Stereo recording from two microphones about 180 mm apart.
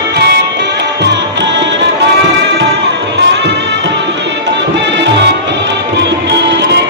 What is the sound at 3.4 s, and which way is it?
Music, 80° right.